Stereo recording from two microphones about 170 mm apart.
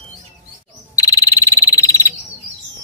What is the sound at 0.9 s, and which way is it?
Insect, 20° left (ahead or behind).